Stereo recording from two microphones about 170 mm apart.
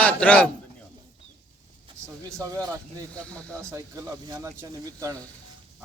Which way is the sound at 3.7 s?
15° right (ahead or behind).